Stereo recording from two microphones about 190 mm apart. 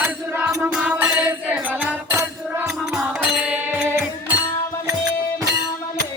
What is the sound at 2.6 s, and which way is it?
Music, centre (ahead or behind).